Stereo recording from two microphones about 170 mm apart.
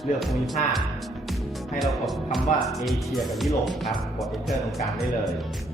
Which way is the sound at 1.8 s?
Centre (ahead or behind).